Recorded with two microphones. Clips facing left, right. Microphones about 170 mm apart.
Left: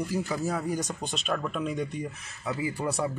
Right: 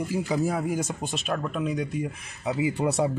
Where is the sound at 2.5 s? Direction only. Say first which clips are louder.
Right 5 dB; 20° right (ahead or behind).